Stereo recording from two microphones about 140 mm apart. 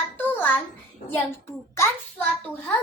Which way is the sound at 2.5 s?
15° left (ahead or behind).